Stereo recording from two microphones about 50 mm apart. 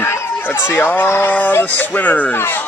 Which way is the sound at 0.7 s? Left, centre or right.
Left.